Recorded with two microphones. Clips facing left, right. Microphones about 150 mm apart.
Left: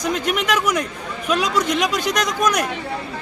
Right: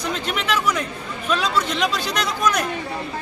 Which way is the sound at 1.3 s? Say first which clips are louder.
Left 2 dB; 45° left (ahead or behind).